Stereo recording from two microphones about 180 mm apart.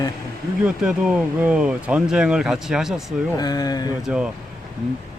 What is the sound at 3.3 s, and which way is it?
Speech, 20° left (ahead or behind).